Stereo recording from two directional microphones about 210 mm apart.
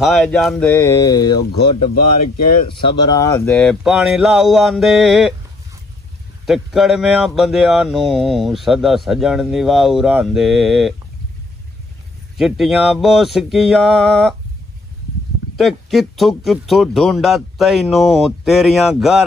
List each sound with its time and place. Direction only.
0.0 s speech: centre (ahead or behind); by 1.4 s 20° left (ahead or behind)
2.7 s speech: 25° left (ahead or behind)
3.3 s speech: 5° left (ahead or behind)
6.4 s speech: centre (ahead or behind)
12.4 s speech: centre (ahead or behind)
15.5 s speech: centre (ahead or behind)